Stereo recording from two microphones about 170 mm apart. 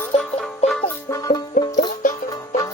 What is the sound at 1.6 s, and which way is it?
Music, 55° left (ahead or behind).